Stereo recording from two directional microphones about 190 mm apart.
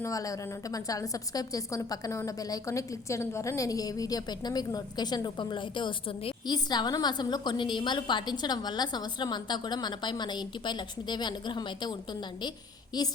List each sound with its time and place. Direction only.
0.0 s a woman's voice: 15° left (ahead or behind)